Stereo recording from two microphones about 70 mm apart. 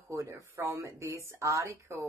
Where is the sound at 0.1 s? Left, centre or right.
Right.